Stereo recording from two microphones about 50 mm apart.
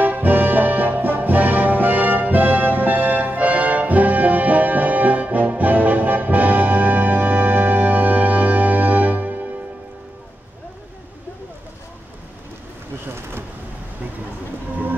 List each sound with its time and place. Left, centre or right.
0.0 s music: right
13.0 s vehicle: right